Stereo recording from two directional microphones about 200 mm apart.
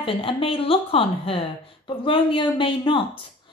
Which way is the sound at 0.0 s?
25° left (ahead or behind).